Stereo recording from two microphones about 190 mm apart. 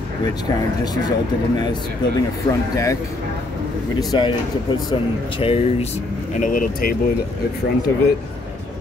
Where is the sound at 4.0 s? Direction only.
20° left (ahead or behind).